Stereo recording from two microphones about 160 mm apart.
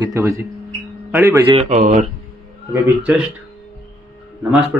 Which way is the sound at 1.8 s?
50° right (ahead or behind).